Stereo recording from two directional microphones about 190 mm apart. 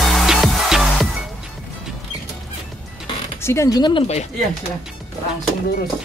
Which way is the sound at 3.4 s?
15° left (ahead or behind).